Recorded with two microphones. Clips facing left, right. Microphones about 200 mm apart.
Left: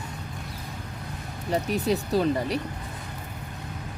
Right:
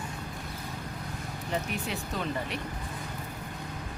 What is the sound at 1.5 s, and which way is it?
Speech, 35° left (ahead or behind).